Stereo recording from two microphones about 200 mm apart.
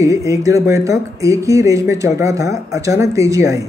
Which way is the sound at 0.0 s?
15° right (ahead or behind).